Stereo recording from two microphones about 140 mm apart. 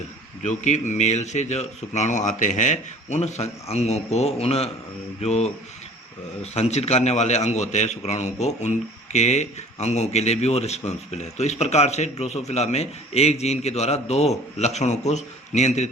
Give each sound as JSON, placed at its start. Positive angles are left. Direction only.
{"t": 0.4, "sound": "a man's voice", "side_deg": 60}